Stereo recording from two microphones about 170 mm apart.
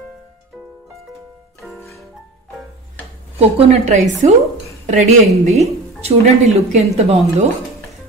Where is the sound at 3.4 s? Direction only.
35° right (ahead or behind).